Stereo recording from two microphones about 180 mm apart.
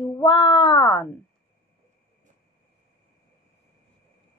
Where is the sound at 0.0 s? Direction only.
25° left (ahead or behind).